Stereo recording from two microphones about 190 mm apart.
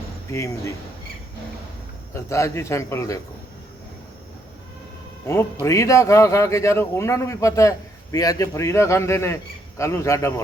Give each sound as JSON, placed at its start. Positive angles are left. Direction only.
{"t": 0.3, "sound": "speech", "side_deg": 15}
{"t": 2.1, "sound": "speech", "side_deg": 15}
{"t": 5.2, "sound": "speech", "side_deg": 15}